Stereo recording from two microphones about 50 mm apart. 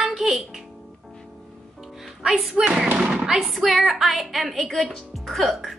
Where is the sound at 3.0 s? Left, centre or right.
Centre.